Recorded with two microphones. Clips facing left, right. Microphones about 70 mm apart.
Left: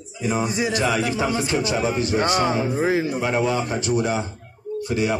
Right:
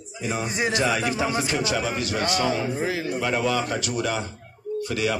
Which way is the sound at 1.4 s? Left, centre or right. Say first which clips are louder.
Left 3 dB; left.